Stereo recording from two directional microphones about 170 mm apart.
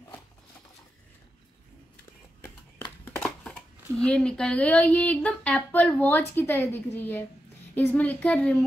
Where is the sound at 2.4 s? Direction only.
10° left (ahead or behind).